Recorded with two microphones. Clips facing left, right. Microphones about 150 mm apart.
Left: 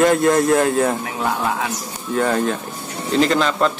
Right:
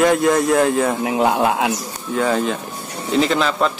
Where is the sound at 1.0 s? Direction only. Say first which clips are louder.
Right 6 dB; 70° right (ahead or behind).